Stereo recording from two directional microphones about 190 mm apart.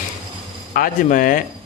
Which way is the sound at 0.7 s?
45° left (ahead or behind).